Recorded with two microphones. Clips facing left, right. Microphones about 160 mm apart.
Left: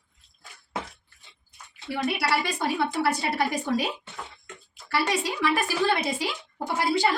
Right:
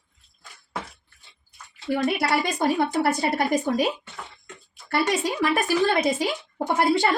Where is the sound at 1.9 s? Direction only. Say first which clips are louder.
Right 3 dB; 45° right (ahead or behind).